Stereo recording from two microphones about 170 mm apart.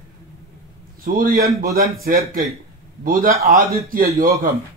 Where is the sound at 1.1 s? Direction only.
60° right (ahead or behind).